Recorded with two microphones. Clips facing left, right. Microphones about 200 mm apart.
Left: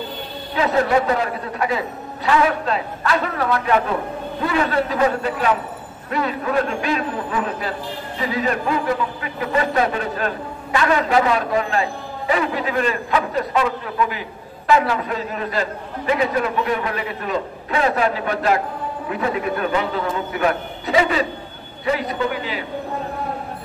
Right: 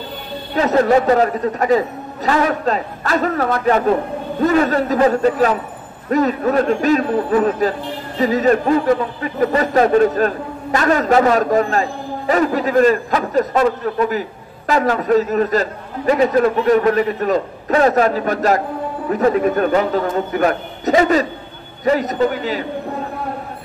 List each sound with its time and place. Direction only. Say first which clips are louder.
0.6 s a man's voice: right 4 dB; 40° right (ahead or behind)